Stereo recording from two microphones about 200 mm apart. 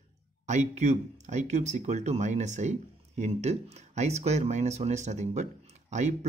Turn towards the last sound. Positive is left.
turn(degrees=-35)  # may be behind; listen again after turning